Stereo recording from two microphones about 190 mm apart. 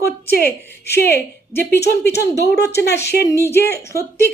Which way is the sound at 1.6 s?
60° left (ahead or behind).